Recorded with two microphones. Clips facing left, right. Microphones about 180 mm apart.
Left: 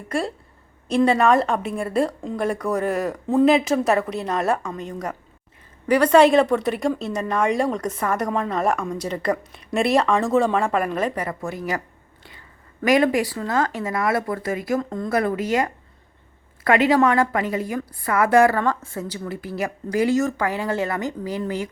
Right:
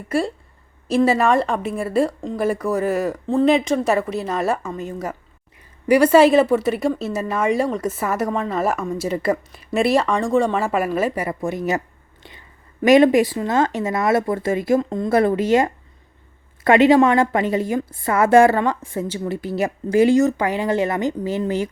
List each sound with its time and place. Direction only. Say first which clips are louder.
0.1 s a woman's voice: right 4 dB; centre (ahead or behind); by 21.7 s 25° right (ahead or behind)